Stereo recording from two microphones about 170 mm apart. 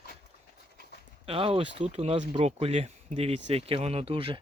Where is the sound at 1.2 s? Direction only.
35° right (ahead or behind).